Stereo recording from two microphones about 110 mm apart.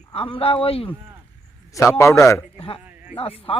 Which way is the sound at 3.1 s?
60° left (ahead or behind).